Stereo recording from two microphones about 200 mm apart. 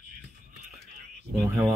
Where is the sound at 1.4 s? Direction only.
15° right (ahead or behind).